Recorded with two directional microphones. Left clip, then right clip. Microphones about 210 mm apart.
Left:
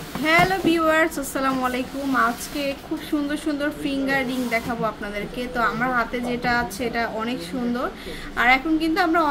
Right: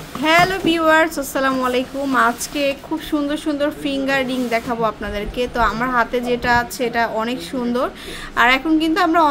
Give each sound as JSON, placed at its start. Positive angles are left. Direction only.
{"t": 0.2, "sound": "a woman's voice", "side_deg": -25}